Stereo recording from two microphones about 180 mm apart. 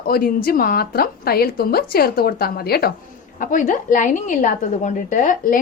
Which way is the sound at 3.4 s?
45° left (ahead or behind).